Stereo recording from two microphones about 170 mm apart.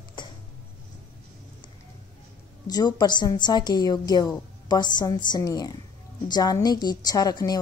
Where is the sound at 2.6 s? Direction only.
25° left (ahead or behind).